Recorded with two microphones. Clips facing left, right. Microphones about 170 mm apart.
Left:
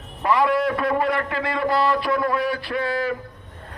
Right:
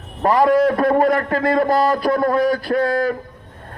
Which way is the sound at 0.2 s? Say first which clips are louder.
Right 6 dB; 40° right (ahead or behind).